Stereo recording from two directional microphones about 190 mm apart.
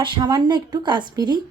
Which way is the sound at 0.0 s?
25° right (ahead or behind).